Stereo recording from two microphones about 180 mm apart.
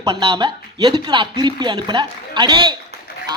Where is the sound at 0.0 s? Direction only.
25° right (ahead or behind).